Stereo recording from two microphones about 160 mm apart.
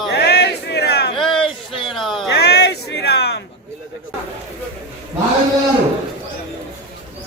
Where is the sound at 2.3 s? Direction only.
90° left.